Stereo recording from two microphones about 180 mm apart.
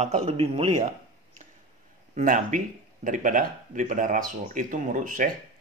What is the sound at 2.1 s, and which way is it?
Speech, 45° right (ahead or behind).